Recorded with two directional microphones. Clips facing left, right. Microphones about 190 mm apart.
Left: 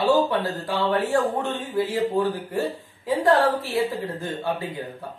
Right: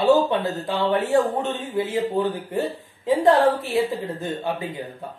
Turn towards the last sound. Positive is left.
turn(degrees=-20)  # may be behind; listen again after turning